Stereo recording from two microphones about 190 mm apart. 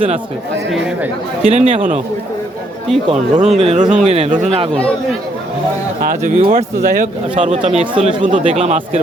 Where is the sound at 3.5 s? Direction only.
35° right (ahead or behind).